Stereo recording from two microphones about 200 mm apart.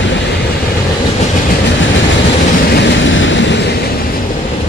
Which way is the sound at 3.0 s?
70° left (ahead or behind).